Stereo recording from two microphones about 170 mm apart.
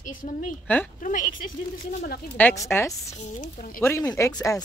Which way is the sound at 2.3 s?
15° left (ahead or behind).